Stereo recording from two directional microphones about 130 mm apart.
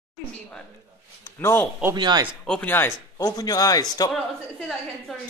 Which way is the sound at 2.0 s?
35° right (ahead or behind).